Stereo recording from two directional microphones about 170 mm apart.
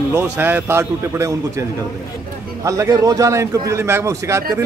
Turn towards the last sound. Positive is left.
turn(degrees=-15)  # may be behind; listen again after turning